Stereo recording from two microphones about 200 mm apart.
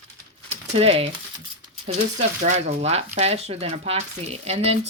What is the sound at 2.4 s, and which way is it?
Speech, 35° right (ahead or behind).